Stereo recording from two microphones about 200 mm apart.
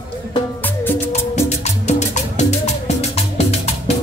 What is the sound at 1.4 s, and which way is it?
Music, 35° left (ahead or behind).